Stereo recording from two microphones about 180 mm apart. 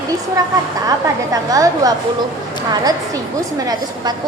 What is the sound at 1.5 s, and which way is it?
Speech, 20° right (ahead or behind).